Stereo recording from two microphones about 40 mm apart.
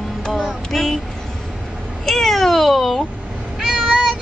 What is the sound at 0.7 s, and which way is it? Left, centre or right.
Speech, centre.